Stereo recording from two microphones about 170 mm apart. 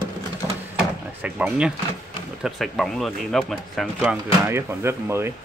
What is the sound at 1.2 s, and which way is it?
Speech, 5° right (ahead or behind).